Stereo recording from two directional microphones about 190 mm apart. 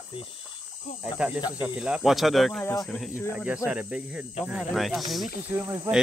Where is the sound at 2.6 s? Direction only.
20° left (ahead or behind).